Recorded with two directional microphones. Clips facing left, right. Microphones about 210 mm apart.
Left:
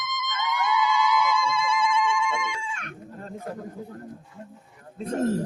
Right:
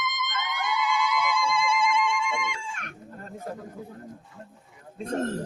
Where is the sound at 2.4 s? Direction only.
50° right (ahead or behind).